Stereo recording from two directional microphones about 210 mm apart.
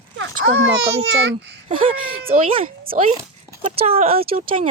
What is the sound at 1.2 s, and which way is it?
Speech, 55° right (ahead or behind).